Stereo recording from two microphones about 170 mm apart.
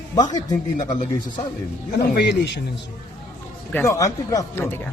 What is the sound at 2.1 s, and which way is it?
Speech, 85° left.